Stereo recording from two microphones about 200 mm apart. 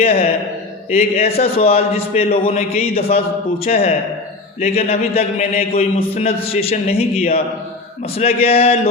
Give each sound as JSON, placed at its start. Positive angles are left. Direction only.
{"t": 0.0, "sound": "a man's voice", "side_deg": 30}